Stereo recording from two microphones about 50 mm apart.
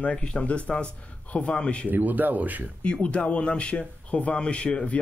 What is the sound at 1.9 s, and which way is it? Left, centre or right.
Speech, right.